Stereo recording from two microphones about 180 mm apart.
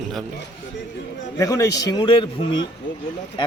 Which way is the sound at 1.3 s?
20° left (ahead or behind).